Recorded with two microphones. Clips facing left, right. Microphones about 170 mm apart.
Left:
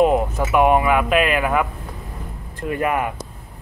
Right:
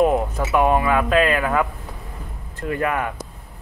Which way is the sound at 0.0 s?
20° left (ahead or behind).